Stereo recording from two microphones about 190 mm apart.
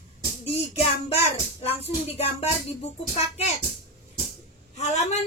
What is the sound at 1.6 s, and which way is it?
Speech, 30° left (ahead or behind).